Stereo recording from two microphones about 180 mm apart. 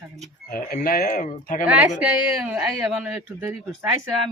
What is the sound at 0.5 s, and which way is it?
Speech, 55° left (ahead or behind).